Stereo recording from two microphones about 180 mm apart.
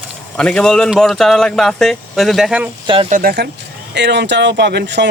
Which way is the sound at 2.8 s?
30° right (ahead or behind).